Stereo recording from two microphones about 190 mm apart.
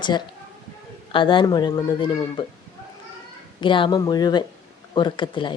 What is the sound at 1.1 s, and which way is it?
A woman's voice, 25° left (ahead or behind).